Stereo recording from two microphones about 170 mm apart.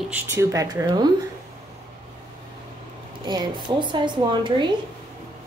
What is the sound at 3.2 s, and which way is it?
A woman's voice, 25° right (ahead or behind).